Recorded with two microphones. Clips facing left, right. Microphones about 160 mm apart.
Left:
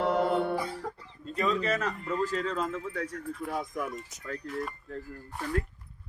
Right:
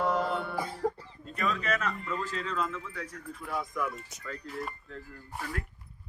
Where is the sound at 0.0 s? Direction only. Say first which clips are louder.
Left 3 dB; 60° left (ahead or behind).